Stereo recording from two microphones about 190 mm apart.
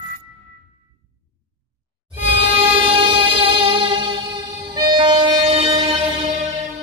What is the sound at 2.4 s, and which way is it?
Music, 30° right (ahead or behind).